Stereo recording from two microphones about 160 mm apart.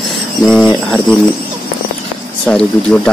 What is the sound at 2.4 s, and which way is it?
Speech, 5° left (ahead or behind).